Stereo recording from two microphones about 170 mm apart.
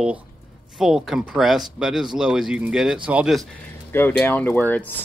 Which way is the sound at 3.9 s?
10° left (ahead or behind).